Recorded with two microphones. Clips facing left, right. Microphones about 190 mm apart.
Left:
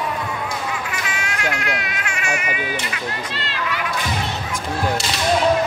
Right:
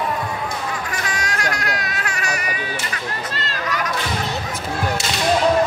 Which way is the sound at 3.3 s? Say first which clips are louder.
Right 1 dB; 40° right (ahead or behind).